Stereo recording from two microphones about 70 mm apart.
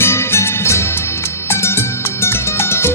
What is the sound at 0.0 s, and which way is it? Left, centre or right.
Music, left.